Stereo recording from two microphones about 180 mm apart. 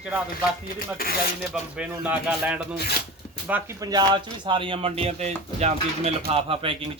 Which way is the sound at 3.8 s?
20° right (ahead or behind).